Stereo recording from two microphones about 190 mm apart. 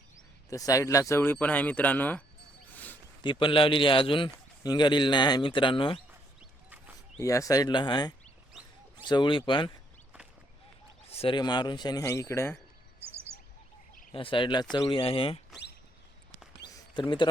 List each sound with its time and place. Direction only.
0.5 s speech: 15° left (ahead or behind)
2.7 s a sound: 10° left (ahead or behind)
3.2 s a man's voice: 25° left (ahead or behind)
7.2 s a man's voice: 15° left (ahead or behind)
8.5 s a sound: centre (ahead or behind)
9.0 s a man's voice: 25° left (ahead or behind)
11.1 s a man's voice: 30° left (ahead or behind)
13.0 s bird: 10° right (ahead or behind)
14.1 s a man's voice: 25° left (ahead or behind)
16.7 s a sound: 25° left (ahead or behind)